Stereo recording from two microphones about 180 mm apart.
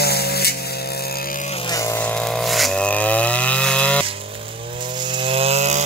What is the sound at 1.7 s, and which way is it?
Chainsaw, 15° left (ahead or behind).